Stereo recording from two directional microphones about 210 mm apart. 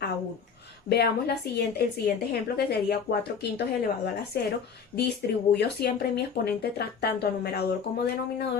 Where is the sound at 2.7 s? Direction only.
50° left (ahead or behind).